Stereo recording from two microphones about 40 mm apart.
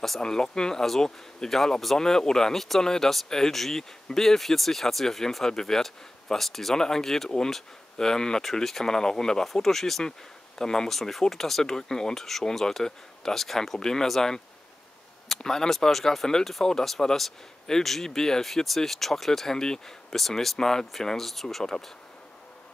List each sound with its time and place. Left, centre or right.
0.2 s speech: centre
20.2 s speech: centre